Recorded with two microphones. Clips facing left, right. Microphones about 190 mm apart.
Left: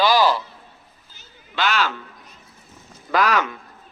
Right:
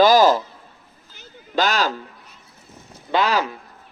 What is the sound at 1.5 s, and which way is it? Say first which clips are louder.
Speech: right 2 dB; 40° right (ahead or behind).